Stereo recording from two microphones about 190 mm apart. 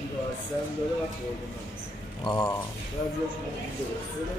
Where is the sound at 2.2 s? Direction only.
20° left (ahead or behind).